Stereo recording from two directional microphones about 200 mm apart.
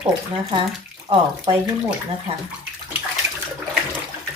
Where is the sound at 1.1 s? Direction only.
20° right (ahead or behind).